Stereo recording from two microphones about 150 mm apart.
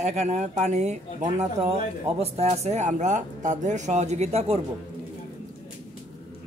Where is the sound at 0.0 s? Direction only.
45° right (ahead or behind).